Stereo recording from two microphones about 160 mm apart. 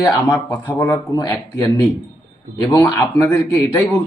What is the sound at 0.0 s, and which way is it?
A man's voice, 15° left (ahead or behind).